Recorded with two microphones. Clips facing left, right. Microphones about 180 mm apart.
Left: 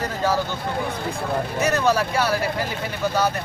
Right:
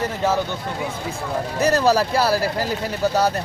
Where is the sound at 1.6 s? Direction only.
35° right (ahead or behind).